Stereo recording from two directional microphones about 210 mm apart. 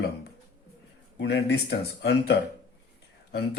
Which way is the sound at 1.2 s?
50° left (ahead or behind).